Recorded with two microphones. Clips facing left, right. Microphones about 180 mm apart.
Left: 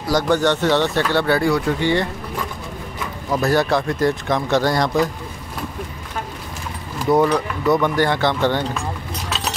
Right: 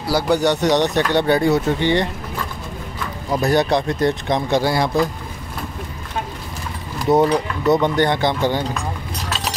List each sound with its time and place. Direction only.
0.0 s speech: 10° right (ahead or behind)
3.3 s speech: 20° right (ahead or behind)
7.1 s speech: 20° right (ahead or behind)